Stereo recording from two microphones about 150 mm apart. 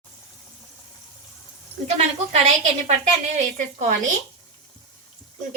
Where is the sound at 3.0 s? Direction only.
50° right (ahead or behind).